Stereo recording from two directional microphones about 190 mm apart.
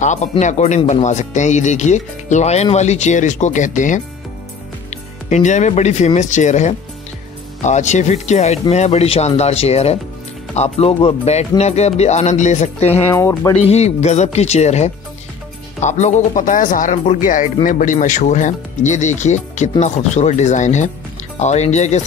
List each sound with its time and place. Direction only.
0.0 s speech: 40° left (ahead or behind)
5.3 s speech: 40° left (ahead or behind)
13.1 s speech: 15° left (ahead or behind)
13.6 s speech: 35° left (ahead or behind)